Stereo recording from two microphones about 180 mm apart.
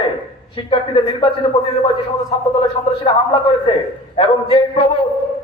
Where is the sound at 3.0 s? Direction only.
35° left (ahead or behind).